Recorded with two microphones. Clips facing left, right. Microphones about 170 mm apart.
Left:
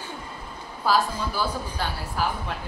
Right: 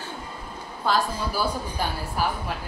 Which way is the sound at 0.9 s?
5° left (ahead or behind).